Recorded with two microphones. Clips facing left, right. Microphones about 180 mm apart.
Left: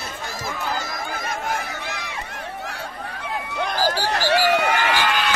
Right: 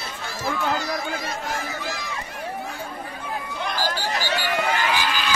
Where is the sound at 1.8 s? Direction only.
60° left (ahead or behind).